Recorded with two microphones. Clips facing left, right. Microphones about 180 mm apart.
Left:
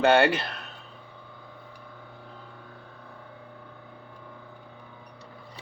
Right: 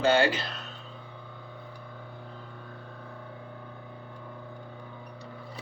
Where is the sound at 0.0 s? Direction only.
60° left (ahead or behind).